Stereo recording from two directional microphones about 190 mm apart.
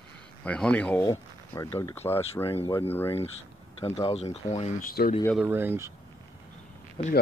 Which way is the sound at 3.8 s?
30° left (ahead or behind).